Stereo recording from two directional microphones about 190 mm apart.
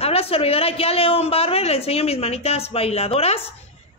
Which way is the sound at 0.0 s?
30° left (ahead or behind).